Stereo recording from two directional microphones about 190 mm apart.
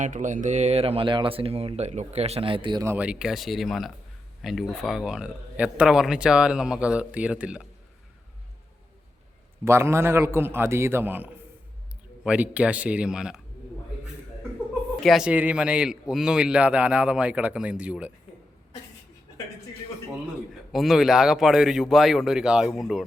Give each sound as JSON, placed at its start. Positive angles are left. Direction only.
{"t": 0.0, "sound": "speech", "side_deg": -40}
{"t": 2.9, "sound": "speech", "side_deg": -5}
{"t": 9.6, "sound": "a man's voice", "side_deg": -15}
{"t": 15.0, "sound": "speech", "side_deg": -5}
{"t": 20.7, "sound": "speech", "side_deg": 0}